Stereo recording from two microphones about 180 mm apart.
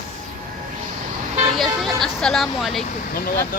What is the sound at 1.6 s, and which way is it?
Speech, centre (ahead or behind).